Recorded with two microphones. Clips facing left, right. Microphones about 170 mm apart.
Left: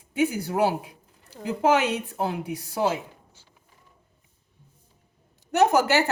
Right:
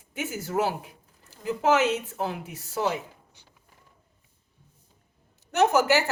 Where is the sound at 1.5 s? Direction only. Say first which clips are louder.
Left 1 dB; 15° left (ahead or behind).